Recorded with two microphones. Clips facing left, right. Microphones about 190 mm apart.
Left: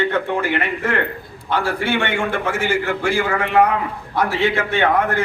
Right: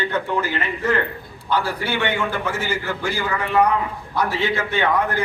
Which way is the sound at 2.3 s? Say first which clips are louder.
Left 4 dB; 50° left (ahead or behind).